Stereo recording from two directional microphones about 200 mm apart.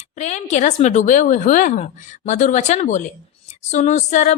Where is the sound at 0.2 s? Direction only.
35° left (ahead or behind).